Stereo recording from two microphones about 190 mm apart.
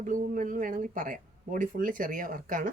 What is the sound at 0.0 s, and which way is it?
Speech, 45° right (ahead or behind).